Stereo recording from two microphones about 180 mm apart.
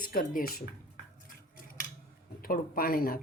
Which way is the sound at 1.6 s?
50° left (ahead or behind).